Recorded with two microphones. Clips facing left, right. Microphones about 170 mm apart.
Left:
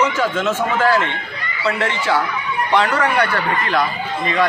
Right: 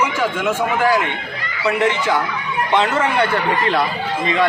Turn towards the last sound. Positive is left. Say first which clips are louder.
# even
turn(degrees=-25)  # may be behind; listen again after turning